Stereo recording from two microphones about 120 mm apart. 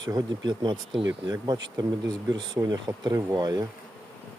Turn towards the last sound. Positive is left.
turn(degrees=-35)  # may be behind; listen again after turning